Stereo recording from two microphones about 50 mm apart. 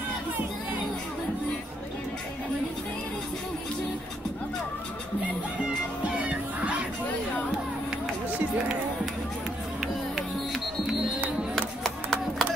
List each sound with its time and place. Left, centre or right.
5.6 s music: right
11.5 s music: centre